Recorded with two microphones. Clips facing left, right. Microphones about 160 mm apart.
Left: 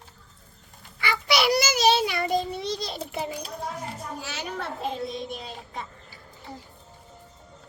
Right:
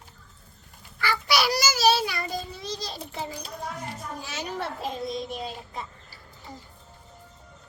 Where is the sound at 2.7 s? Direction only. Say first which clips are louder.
Left 4 dB; 20° left (ahead or behind).